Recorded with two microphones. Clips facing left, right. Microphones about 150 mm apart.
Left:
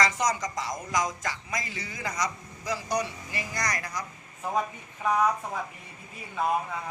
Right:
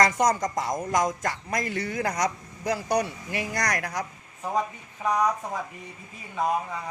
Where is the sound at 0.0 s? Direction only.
55° right (ahead or behind).